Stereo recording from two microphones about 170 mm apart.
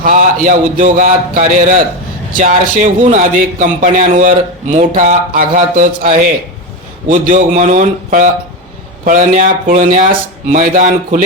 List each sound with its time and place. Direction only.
0.0 s a man's voice: 55° right (ahead or behind)